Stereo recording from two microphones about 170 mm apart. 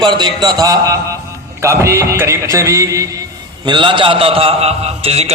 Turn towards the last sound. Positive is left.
turn(degrees=-35)  # may be behind; listen again after turning